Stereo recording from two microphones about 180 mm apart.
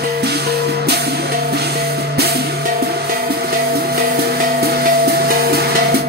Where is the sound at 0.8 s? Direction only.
65° right (ahead or behind).